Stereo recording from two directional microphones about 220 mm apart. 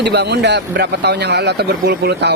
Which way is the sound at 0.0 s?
50° right (ahead or behind).